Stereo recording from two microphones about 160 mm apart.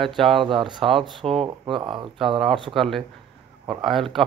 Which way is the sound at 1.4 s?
30° right (ahead or behind).